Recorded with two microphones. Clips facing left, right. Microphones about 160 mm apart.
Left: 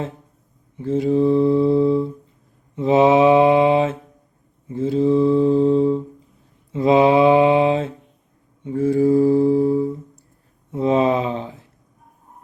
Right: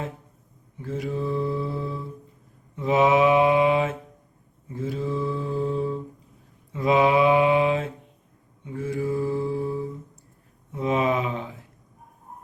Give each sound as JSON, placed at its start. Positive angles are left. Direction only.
{"t": 0.8, "sound": "mantra", "side_deg": 25}